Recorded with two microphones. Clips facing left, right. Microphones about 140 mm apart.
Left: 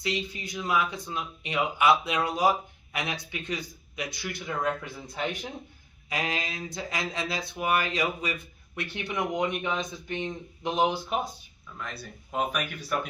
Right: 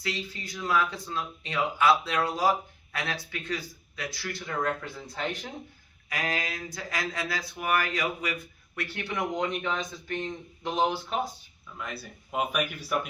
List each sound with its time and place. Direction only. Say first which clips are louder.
0.0 s speech: left 3 dB; 20° left (ahead or behind)
6.1 s speech: even; 25° left (ahead or behind)
11.8 s speech: right 1 dB; 5° right (ahead or behind)